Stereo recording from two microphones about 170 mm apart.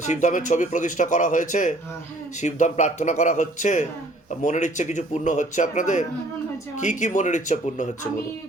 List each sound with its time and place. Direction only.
0.0 s a man's voice: 45° left (ahead or behind)